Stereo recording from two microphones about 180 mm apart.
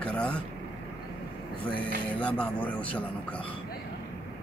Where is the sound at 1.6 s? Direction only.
30° left (ahead or behind).